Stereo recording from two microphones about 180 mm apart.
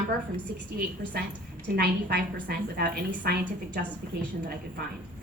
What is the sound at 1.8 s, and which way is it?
A woman's voice, 55° right (ahead or behind).